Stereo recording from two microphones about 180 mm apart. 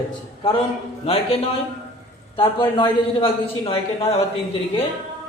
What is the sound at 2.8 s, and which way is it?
Speech, 30° left (ahead or behind).